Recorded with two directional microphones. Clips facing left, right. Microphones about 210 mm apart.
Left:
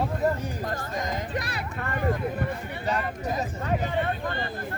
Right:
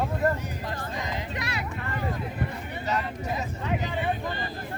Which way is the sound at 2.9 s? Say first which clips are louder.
Left 1 dB; 50° left (ahead or behind).